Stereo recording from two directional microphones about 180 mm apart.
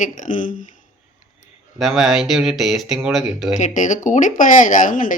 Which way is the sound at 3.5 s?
45° left (ahead or behind).